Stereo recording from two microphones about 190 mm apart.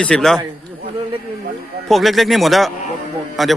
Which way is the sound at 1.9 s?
Centre (ahead or behind).